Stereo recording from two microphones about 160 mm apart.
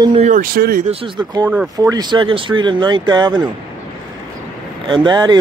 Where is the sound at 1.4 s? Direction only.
10° right (ahead or behind).